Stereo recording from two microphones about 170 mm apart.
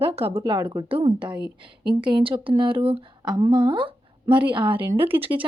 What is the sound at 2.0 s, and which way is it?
A woman's voice, 30° right (ahead or behind).